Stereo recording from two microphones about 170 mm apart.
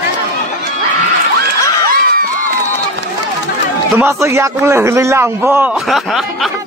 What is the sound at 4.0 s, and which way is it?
A man's voice, 15° right (ahead or behind).